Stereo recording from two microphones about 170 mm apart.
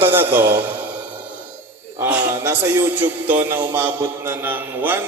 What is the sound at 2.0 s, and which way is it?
A man's voice, 15° right (ahead or behind).